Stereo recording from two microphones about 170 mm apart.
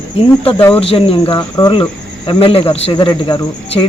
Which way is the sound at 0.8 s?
35° left (ahead or behind).